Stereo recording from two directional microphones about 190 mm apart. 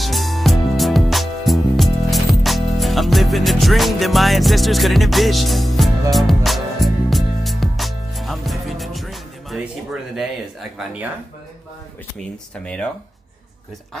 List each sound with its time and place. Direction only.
0.0 s music: centre (ahead or behind)
10.8 s speech: 5° right (ahead or behind)
12.6 s speech: 5° left (ahead or behind)